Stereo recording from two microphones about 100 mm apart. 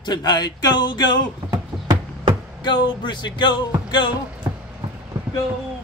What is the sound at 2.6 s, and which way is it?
Music, 55° left (ahead or behind).